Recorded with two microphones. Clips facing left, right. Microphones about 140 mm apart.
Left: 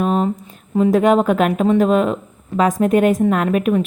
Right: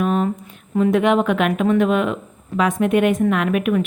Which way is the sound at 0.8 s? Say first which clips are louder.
Left 3 dB; 35° left (ahead or behind).